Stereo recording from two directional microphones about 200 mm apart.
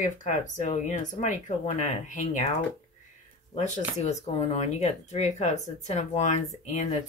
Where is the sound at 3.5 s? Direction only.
35° left (ahead or behind).